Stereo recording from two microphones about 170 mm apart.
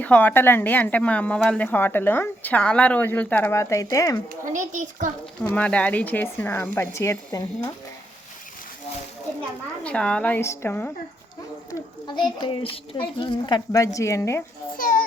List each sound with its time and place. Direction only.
0.0 s a woman's voice: 10° left (ahead or behind)
4.4 s a child's voice: 50° right (ahead or behind)
5.4 s a woman's voice: 5° left (ahead or behind)
9.8 s a woman's voice: 5° left (ahead or behind)
11.7 s a child's voice: 25° left (ahead or behind)
14.8 s a child's voice: 55° left (ahead or behind)